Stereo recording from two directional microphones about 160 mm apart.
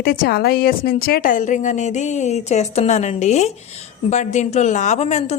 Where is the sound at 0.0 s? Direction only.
70° left (ahead or behind).